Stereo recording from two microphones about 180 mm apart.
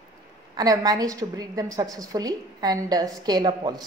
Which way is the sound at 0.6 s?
20° right (ahead or behind).